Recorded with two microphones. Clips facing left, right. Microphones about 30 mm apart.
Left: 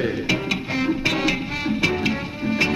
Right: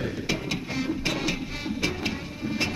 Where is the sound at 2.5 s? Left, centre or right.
Left.